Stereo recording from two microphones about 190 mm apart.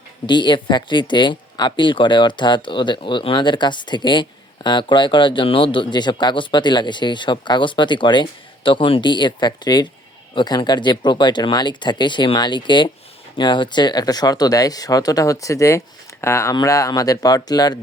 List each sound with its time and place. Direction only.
0.3 s speech: 25° left (ahead or behind)